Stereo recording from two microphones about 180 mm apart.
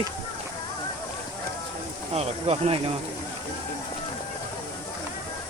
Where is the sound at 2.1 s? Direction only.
35° right (ahead or behind).